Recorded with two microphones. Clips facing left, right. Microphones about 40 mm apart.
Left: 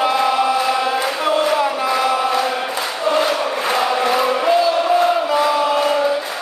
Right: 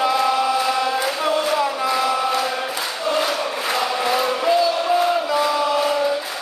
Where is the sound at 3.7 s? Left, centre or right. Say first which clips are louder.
Left 3 dB; centre.